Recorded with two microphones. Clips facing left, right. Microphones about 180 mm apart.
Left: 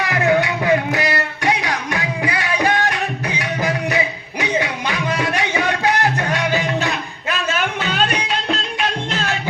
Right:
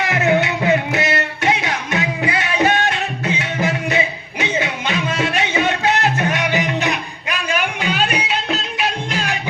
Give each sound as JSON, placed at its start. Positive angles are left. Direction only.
{"t": 0.0, "sound": "music", "side_deg": -20}